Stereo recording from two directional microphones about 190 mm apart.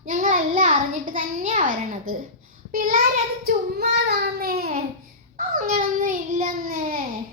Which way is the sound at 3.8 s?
60° right (ahead or behind).